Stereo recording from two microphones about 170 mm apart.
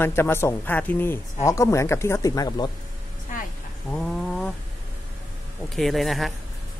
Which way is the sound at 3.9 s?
5° left (ahead or behind).